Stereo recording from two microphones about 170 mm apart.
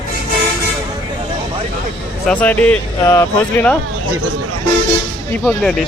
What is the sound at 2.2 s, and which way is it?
Speech, 10° left (ahead or behind).